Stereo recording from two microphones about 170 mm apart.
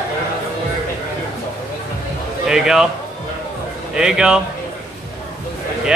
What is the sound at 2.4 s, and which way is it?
Speech, 5° right (ahead or behind).